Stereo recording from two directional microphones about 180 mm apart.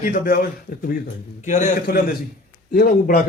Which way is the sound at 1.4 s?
45° left (ahead or behind).